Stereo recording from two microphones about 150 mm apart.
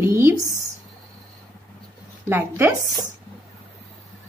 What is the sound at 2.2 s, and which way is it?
Speech, 15° right (ahead or behind).